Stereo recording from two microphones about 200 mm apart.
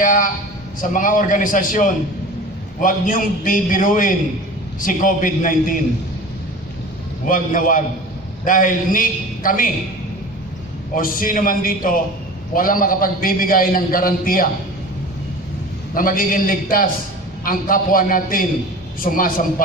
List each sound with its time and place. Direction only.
0.0 s a man's voice: 40° left (ahead or behind)
7.2 s a man's voice: 40° left (ahead or behind)
11.0 s a man's voice: 45° left (ahead or behind)
15.9 s a man's voice: 45° left (ahead or behind)